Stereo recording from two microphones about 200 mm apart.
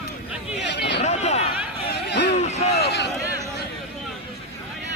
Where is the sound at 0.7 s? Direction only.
55° left (ahead or behind).